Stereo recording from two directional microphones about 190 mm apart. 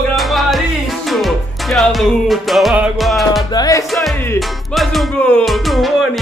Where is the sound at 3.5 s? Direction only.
20° left (ahead or behind).